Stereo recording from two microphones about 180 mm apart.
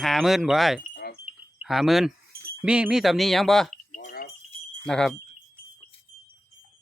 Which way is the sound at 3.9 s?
50° left (ahead or behind).